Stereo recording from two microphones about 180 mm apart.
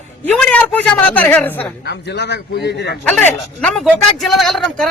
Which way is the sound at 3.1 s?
10° left (ahead or behind).